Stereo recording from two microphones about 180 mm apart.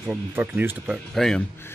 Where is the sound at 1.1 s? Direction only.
Centre (ahead or behind).